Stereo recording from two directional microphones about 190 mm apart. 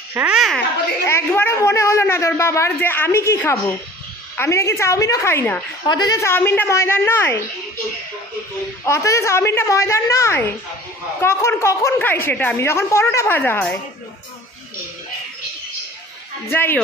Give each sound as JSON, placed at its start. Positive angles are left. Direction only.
{"t": 0.1, "sound": "a child's voice", "side_deg": -5}
{"t": 1.0, "sound": "speech", "side_deg": 10}
{"t": 8.8, "sound": "speech", "side_deg": 15}
{"t": 16.4, "sound": "speech", "side_deg": 10}